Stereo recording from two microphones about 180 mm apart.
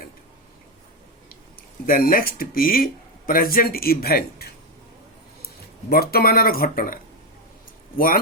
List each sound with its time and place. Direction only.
1.9 s speech: 50° left (ahead or behind)
5.9 s speech: 60° left (ahead or behind)